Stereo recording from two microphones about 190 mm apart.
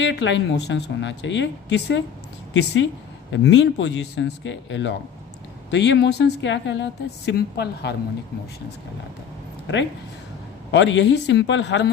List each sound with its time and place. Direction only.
0.0 s speech: 70° left (ahead or behind)
7.3 s a woman's voice: 60° left (ahead or behind)
10.7 s speech: 70° left (ahead or behind)